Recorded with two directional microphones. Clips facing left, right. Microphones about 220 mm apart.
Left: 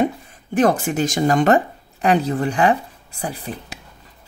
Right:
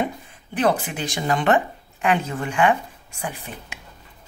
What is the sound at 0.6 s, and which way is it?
A woman's voice, 45° left (ahead or behind).